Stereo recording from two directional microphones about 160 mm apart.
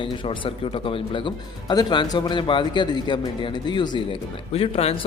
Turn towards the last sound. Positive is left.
turn(degrees=35)  # may be behind; listen again after turning